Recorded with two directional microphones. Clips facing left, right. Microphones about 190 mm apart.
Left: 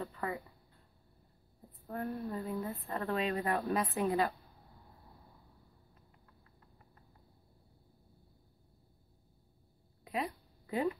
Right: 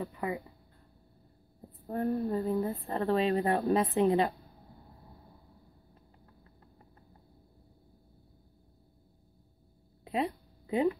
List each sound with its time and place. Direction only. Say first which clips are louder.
0.0 s speech: right 4 dB; 15° right (ahead or behind)
1.9 s speech: right 8 dB; 35° right (ahead or behind)
10.0 s a sound: right 5 dB; 30° right (ahead or behind)